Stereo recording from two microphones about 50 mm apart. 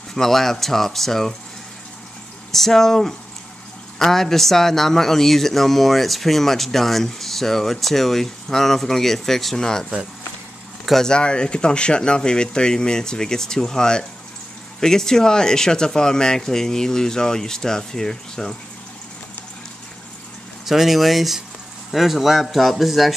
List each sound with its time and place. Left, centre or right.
0.1 s a man's voice: centre
2.5 s a man's voice: centre
11.1 s speech: centre
20.6 s a man's voice: centre